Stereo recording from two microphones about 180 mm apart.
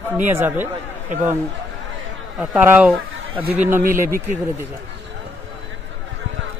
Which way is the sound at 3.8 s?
50° right (ahead or behind).